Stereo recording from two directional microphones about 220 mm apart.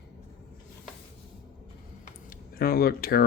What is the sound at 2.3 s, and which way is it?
Speech, 40° left (ahead or behind).